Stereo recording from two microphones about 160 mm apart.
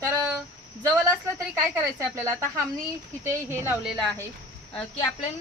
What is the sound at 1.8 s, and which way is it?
A woman's voice, 15° right (ahead or behind).